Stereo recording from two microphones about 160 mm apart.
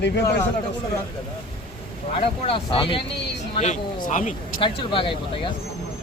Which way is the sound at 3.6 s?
50° left (ahead or behind).